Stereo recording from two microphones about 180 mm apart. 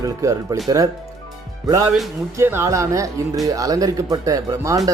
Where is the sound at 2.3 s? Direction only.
15° right (ahead or behind).